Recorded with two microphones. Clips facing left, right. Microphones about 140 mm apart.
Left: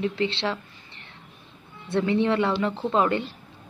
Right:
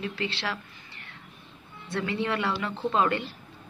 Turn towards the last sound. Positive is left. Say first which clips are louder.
# left 3 dB
turn(degrees=20)  # may be behind; listen again after turning